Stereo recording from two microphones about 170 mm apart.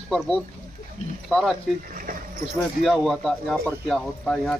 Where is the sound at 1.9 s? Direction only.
55° right (ahead or behind).